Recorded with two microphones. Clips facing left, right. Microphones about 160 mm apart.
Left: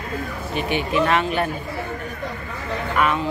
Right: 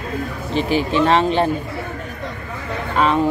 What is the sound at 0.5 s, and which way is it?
Speech, 30° right (ahead or behind).